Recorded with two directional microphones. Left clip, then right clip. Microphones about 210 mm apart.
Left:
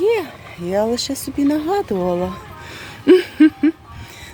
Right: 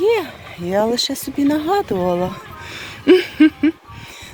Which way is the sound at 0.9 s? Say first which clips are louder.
Right 2 dB; 50° right (ahead or behind).